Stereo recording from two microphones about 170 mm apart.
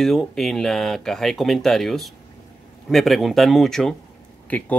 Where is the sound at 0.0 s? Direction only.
Centre (ahead or behind).